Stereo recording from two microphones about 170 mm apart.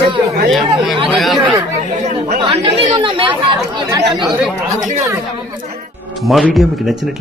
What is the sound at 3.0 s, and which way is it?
Speech, 30° right (ahead or behind).